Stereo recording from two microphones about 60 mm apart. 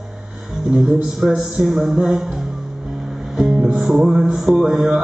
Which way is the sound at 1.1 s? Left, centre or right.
Centre.